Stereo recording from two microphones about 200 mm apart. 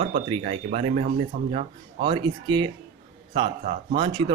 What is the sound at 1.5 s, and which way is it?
Speech, 25° right (ahead or behind).